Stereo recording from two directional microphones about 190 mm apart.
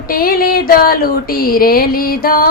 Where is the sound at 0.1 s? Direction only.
50° left (ahead or behind).